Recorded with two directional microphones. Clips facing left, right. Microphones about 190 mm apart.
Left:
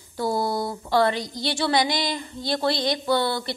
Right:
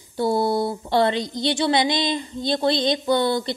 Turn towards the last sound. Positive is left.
turn(degrees=-20)  # may be behind; listen again after turning